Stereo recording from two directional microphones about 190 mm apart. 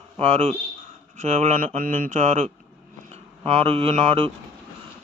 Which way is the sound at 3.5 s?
30° right (ahead or behind).